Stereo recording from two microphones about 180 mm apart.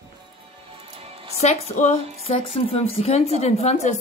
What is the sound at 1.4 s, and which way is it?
Speech, 40° left (ahead or behind).